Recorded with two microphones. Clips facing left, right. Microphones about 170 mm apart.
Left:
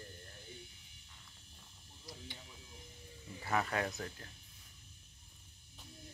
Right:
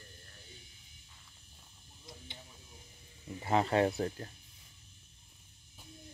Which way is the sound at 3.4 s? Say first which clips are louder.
Right 7 dB; 25° right (ahead or behind).